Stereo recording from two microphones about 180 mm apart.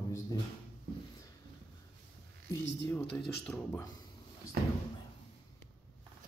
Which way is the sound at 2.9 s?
10° left (ahead or behind).